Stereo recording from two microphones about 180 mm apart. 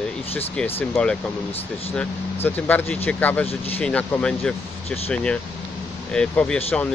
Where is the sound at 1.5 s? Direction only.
35° left (ahead or behind).